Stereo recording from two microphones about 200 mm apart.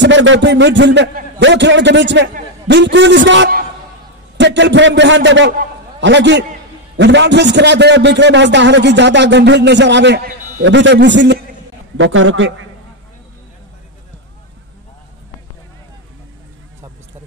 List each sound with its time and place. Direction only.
0.0 s a man's voice: 65° right (ahead or behind)
12.0 s a man's voice: 75° right (ahead or behind)